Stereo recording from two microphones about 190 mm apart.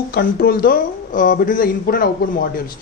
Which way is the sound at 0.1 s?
55° left (ahead or behind).